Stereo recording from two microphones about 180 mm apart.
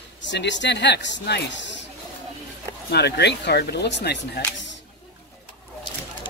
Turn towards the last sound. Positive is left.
turn(degrees=80)